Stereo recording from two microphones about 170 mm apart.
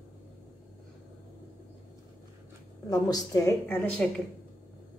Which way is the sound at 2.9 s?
20° left (ahead or behind).